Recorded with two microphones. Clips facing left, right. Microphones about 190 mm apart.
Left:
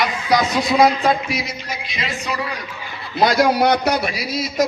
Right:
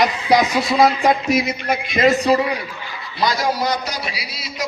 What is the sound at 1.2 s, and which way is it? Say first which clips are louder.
A man's voice: right 7 dB; 50° right (ahead or behind).